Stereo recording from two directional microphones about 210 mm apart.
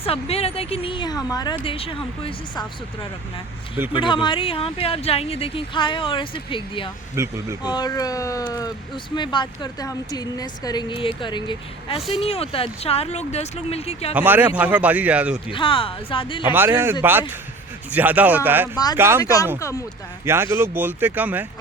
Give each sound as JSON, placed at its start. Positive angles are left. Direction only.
{"t": 0.0, "sound": "speech", "side_deg": 30}
{"t": 7.2, "sound": "a man's voice", "side_deg": -15}
{"t": 7.6, "sound": "speech", "side_deg": 20}
{"t": 14.1, "sound": "a man's voice", "side_deg": -10}
{"t": 15.4, "sound": "speech", "side_deg": 25}
{"t": 16.6, "sound": "a man's voice", "side_deg": -10}
{"t": 19.2, "sound": "speech", "side_deg": 15}
{"t": 20.2, "sound": "a man's voice", "side_deg": -10}